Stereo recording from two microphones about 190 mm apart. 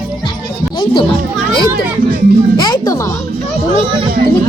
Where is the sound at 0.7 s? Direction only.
25° left (ahead or behind).